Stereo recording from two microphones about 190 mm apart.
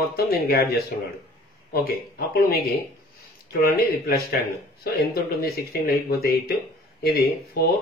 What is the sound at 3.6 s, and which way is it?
Speech, 55° left (ahead or behind).